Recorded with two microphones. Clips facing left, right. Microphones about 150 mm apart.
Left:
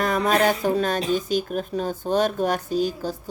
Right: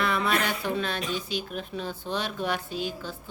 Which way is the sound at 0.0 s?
40° left (ahead or behind).